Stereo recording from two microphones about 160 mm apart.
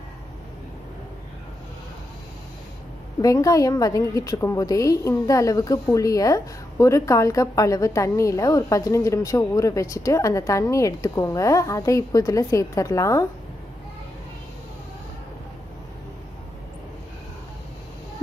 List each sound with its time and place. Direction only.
3.2 s a woman's voice: 20° left (ahead or behind)